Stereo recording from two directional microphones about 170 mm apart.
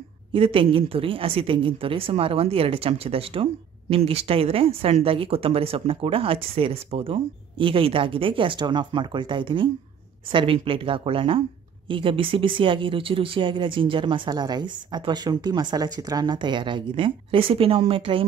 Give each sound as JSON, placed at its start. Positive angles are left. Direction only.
{"t": 0.3, "sound": "speech", "side_deg": -30}